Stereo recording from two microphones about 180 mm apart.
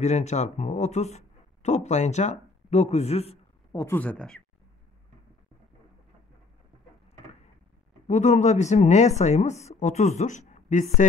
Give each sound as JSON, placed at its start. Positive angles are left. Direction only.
{"t": 0.0, "sound": "speech", "side_deg": 40}
{"t": 3.7, "sound": "speech", "side_deg": 15}
{"t": 8.1, "sound": "a woman's voice", "side_deg": 40}